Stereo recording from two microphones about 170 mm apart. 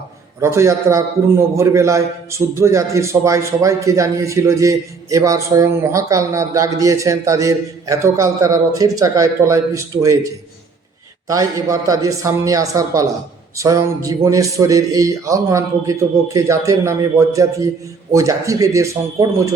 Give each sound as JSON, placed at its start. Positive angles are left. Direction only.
{"t": 0.3, "sound": "a man's voice", "side_deg": -15}